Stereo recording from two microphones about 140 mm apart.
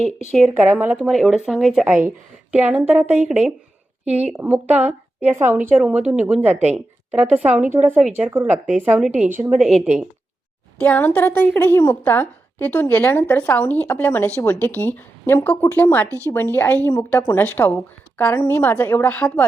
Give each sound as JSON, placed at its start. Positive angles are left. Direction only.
{"t": 0.6, "sound": "a woman's voice", "side_deg": -15}
{"t": 0.9, "sound": "speech", "side_deg": 0}
{"t": 2.0, "sound": "a woman's voice", "side_deg": -10}
{"t": 4.0, "sound": "a woman's voice", "side_deg": -50}
{"t": 4.3, "sound": "a woman's voice", "side_deg": -15}
{"t": 9.6, "sound": "speech", "side_deg": 0}
{"t": 10.8, "sound": "a woman's voice", "side_deg": 10}